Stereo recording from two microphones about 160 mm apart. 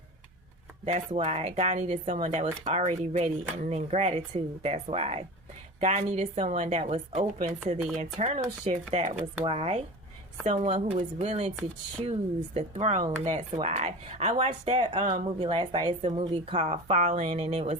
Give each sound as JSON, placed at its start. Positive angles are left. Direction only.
{"t": 0.9, "sound": "speech", "side_deg": -45}
{"t": 12.5, "sound": "speech", "side_deg": -45}